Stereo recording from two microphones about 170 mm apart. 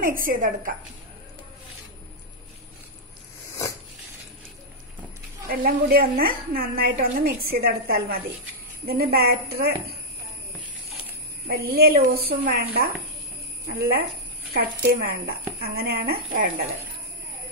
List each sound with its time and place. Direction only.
0.0 s a woman's voice: 55° right (ahead or behind)
5.5 s a woman's voice: 60° right (ahead or behind)
11.4 s a woman's voice: 65° right (ahead or behind)